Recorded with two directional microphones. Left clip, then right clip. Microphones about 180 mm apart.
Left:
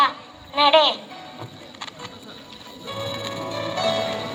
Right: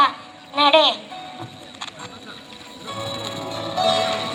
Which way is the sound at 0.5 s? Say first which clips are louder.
Right 1 dB; 35° left (ahead or behind).